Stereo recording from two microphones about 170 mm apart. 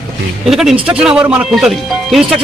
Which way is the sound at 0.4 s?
Centre (ahead or behind).